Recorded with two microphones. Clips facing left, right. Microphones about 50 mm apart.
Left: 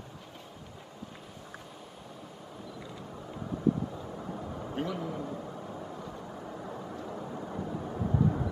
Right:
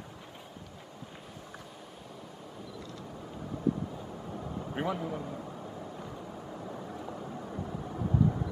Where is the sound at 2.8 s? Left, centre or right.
Centre.